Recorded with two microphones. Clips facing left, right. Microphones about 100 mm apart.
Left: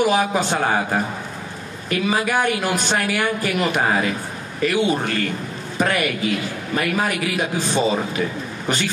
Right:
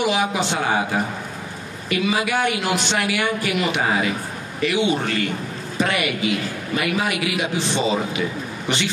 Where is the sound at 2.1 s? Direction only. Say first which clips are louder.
Left 2 dB; 45° left (ahead or behind).